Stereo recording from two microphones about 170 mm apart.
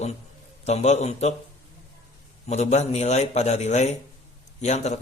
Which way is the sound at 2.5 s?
40° left (ahead or behind).